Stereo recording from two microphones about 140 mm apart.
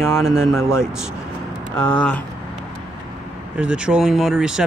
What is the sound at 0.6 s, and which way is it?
Speech, 20° left (ahead or behind).